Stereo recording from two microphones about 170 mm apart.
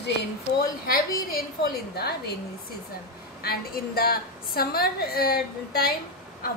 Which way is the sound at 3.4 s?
60° left (ahead or behind).